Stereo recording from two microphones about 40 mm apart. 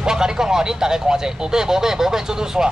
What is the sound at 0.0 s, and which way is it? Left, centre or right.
Speech, centre.